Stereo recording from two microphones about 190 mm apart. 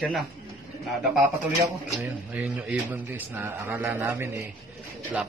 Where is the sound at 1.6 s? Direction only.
15° right (ahead or behind).